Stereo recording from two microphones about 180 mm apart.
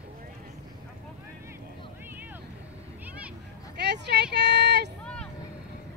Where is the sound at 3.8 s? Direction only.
70° right (ahead or behind).